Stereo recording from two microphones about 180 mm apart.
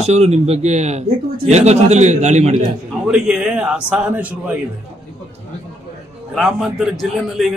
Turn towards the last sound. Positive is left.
turn(degrees=0)  # may be behind; listen again after turning